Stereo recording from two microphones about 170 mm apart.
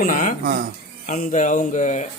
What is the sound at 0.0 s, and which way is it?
A man's voice, 50° left (ahead or behind).